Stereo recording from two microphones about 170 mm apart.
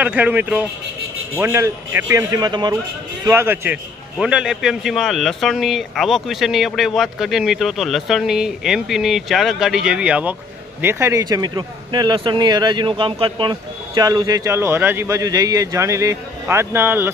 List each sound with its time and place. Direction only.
0.0 s a man's voice: 10° right (ahead or behind); by 2.7 s 25° right (ahead or behind)
3.3 s a man's voice: 15° right (ahead or behind)